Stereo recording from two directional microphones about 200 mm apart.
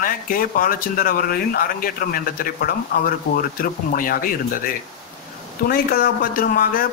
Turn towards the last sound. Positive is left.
turn(degrees=45)  # may be behind; listen again after turning